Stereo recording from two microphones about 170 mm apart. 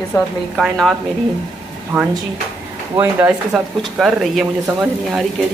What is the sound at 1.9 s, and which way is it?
Speech, 15° right (ahead or behind).